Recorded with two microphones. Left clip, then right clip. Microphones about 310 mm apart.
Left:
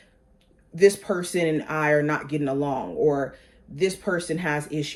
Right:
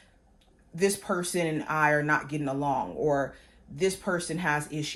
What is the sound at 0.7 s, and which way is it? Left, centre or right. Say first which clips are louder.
Speech: left 8 dB; centre.